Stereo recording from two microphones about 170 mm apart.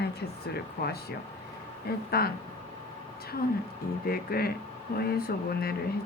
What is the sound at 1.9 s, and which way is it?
Speech, 70° left (ahead or behind).